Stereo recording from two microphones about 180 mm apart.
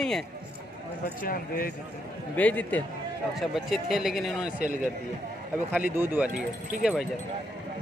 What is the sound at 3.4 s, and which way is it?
Speech, centre (ahead or behind).